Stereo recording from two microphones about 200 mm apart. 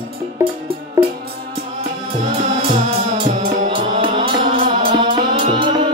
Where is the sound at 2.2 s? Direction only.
35° right (ahead or behind).